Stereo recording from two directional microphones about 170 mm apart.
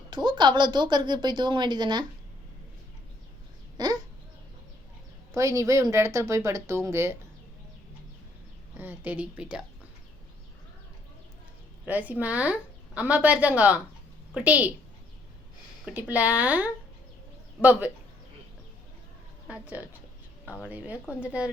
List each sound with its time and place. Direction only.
0.1 s a woman's voice: 25° right (ahead or behind)
3.8 s a sound: 25° right (ahead or behind)
5.3 s a woman's voice: 20° right (ahead or behind)
8.8 s a woman's voice: 10° right (ahead or behind)
11.9 s a woman's voice: 10° right (ahead or behind)
15.9 s a woman's voice: 10° right (ahead or behind)
19.5 s a woman's voice: 10° right (ahead or behind)